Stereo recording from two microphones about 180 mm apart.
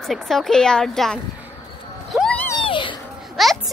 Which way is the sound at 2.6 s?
25° left (ahead or behind).